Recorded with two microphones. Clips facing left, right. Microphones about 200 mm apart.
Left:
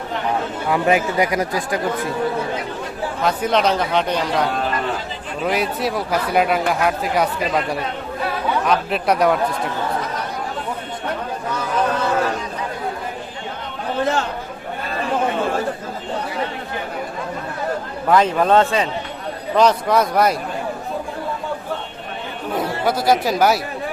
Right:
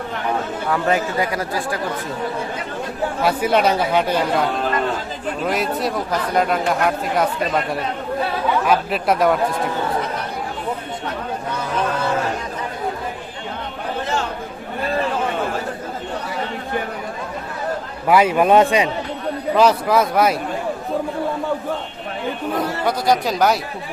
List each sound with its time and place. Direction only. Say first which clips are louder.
0.7 s speech: left 2 dB; 15° left (ahead or behind)
3.2 s speech: right 1 dB; 5° right (ahead or behind)
18.1 s speech: right 1 dB; 10° right (ahead or behind)
19.5 s speech: even; 5° right (ahead or behind)
22.5 s speech: left 3 dB; 5° left (ahead or behind)